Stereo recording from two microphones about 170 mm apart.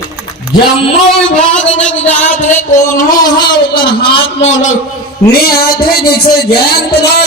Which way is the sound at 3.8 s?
30° left (ahead or behind).